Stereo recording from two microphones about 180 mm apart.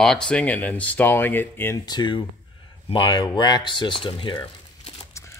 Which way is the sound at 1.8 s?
25° left (ahead or behind).